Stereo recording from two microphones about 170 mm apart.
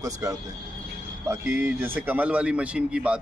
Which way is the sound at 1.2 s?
10° right (ahead or behind).